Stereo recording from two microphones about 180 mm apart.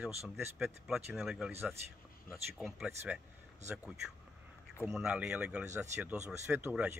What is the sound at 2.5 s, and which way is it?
Speech, centre (ahead or behind).